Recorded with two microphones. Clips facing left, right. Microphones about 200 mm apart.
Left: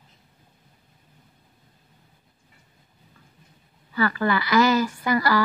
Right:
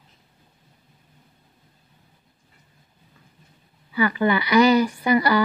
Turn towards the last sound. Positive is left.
turn(degrees=-20)  # may be behind; listen again after turning